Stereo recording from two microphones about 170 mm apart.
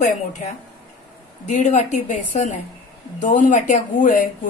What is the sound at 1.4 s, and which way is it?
A woman's voice, 45° left (ahead or behind).